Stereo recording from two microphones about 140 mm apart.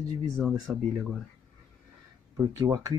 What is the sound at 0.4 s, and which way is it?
Speech, centre (ahead or behind).